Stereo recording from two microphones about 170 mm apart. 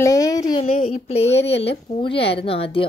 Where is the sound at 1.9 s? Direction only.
30° left (ahead or behind).